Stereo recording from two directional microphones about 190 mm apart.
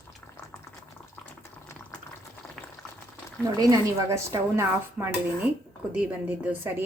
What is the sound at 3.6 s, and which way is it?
A woman's voice, 20° right (ahead or behind).